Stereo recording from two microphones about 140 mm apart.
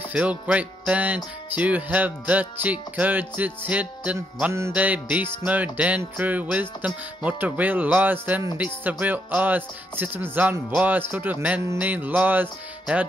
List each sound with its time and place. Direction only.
0.1 s music: 10° right (ahead or behind)